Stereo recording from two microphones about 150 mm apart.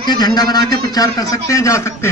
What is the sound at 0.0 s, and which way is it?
A man's voice, 25° left (ahead or behind).